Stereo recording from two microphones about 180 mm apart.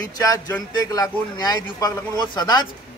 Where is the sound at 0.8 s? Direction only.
20° left (ahead or behind).